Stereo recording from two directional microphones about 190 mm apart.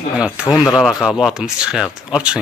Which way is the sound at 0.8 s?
Centre (ahead or behind).